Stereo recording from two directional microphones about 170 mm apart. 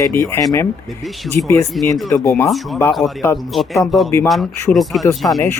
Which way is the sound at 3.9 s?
Centre (ahead or behind).